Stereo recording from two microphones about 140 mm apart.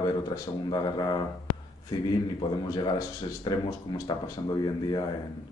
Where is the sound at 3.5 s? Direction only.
30° left (ahead or behind).